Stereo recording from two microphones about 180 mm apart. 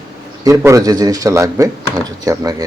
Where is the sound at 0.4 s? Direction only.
20° right (ahead or behind).